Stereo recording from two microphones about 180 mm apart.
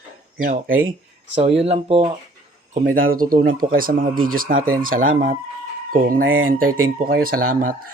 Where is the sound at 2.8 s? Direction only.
50° right (ahead or behind).